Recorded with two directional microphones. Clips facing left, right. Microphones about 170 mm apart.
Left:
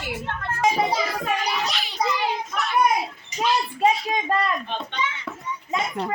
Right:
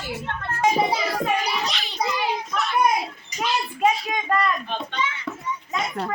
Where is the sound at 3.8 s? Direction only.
30° left (ahead or behind).